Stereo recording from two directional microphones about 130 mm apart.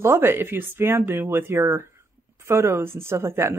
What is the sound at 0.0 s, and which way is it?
Speech, 20° right (ahead or behind).